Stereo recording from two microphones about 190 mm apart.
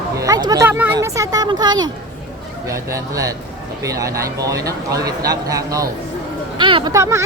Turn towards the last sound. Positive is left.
turn(degrees=-15)  # may be behind; listen again after turning